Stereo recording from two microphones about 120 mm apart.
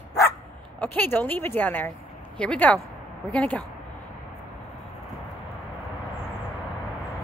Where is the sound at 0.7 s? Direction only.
15° left (ahead or behind).